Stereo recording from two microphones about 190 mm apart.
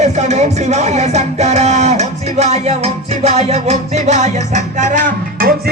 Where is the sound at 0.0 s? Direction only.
35° right (ahead or behind).